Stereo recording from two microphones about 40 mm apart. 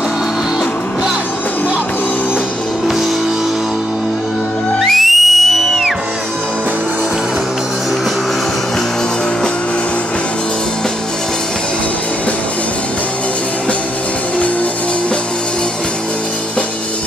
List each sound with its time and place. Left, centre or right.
4.7 s whistle: centre